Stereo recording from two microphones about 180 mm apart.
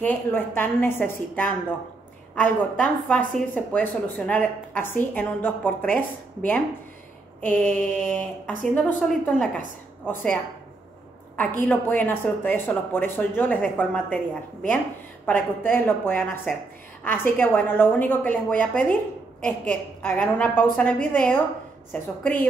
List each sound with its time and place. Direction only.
0.0 s a woman's voice: 10° left (ahead or behind)
15.2 s a woman's voice: 10° left (ahead or behind)